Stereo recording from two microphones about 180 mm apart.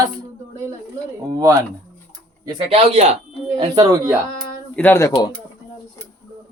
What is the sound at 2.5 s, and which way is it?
Speech, 35° right (ahead or behind).